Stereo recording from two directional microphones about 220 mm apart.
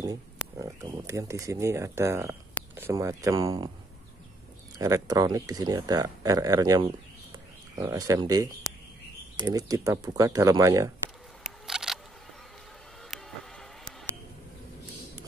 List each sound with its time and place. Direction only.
0.6 s speech: 15° right (ahead or behind)
4.7 s speech: 15° right (ahead or behind)
11.4 s single-lens reflex camera: 5° right (ahead or behind)